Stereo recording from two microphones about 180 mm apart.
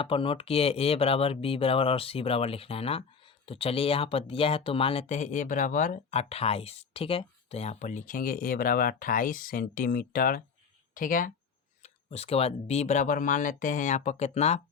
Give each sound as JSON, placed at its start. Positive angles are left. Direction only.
{"t": 0.0, "sound": "speech", "side_deg": 30}
{"t": 11.8, "sound": "speech", "side_deg": 35}